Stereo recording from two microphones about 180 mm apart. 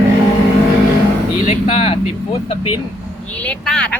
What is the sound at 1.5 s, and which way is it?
Vehicle, 35° left (ahead or behind).